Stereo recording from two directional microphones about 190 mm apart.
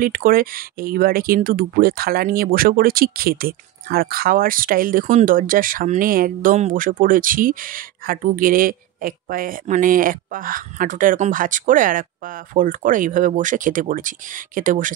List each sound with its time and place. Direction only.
0.0 s speech: 50° right (ahead or behind)